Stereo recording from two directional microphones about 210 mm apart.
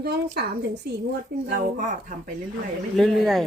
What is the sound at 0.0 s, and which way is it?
A woman's voice, 50° right (ahead or behind).